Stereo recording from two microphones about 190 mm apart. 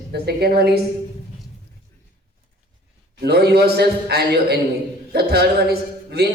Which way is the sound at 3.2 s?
60° right (ahead or behind).